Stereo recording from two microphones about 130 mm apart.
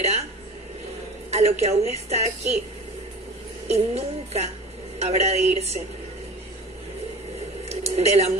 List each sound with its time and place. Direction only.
1.3 s a woman's voice: 55° right (ahead or behind)
3.6 s music: 55° right (ahead or behind)
4.9 s a woman's voice: 55° right (ahead or behind)
7.7 s a sound: 55° right (ahead or behind)